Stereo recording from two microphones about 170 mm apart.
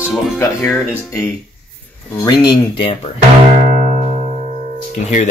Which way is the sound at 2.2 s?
25° left (ahead or behind).